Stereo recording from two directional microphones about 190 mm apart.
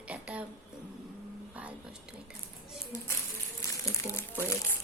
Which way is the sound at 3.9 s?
15° left (ahead or behind).